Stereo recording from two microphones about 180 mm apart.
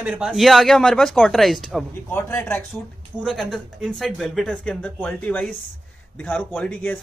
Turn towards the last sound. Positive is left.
turn(degrees=10)  # may be behind; listen again after turning